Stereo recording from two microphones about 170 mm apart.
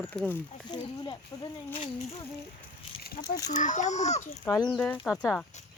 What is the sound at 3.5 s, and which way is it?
Speech, 45° left (ahead or behind).